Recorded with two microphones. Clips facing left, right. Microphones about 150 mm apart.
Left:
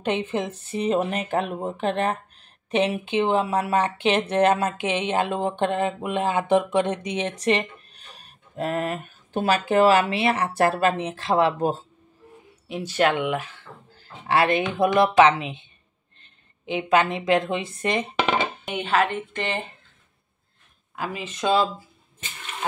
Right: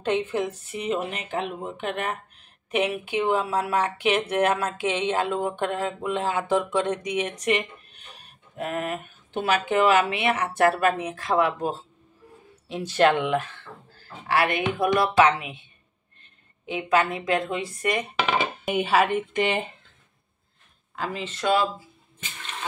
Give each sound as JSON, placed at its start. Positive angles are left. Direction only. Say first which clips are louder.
{"t": 0.0, "sound": "speech", "louder": "even", "side_deg": 20}
{"t": 12.6, "sound": "speech", "louder": "right 2 dB", "side_deg": 10}
{"t": 13.9, "sound": "a woman's voice", "louder": "left 2 dB", "side_deg": 25}
{"t": 18.7, "sound": "a woman's voice", "louder": "right 2 dB", "side_deg": -5}
{"t": 20.9, "sound": "speech", "louder": "even", "side_deg": 10}